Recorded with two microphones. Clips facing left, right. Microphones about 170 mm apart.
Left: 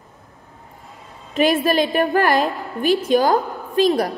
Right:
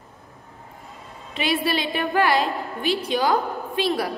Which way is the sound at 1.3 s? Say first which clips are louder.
Left 7 dB; 45° left (ahead or behind).